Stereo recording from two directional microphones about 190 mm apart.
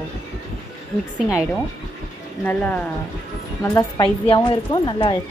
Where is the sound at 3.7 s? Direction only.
20° left (ahead or behind).